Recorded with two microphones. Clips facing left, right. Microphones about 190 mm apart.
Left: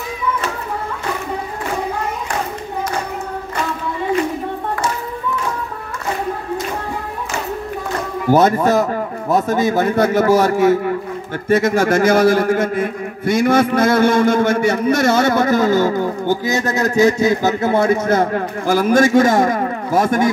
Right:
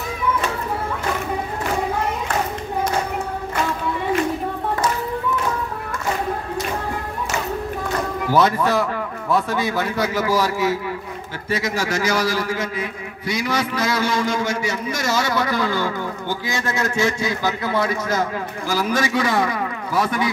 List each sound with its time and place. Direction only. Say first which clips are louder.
8.3 s a man's voice: left 5 dB; 45° left (ahead or behind)